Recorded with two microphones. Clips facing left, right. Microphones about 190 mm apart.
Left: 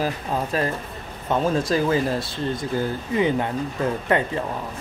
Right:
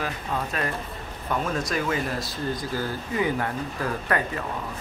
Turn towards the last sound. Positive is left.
turn(degrees=25)  # may be behind; listen again after turning